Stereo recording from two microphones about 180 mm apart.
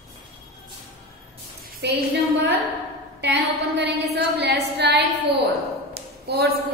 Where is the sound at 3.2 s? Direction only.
70° right (ahead or behind).